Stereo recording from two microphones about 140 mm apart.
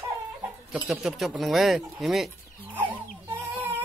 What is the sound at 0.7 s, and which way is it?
Speech, 5° right (ahead or behind).